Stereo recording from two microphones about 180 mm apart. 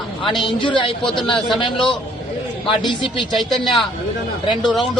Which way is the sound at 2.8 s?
25° left (ahead or behind).